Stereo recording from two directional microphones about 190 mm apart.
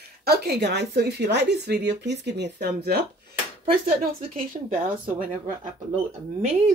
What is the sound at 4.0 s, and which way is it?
Speech, 50° right (ahead or behind).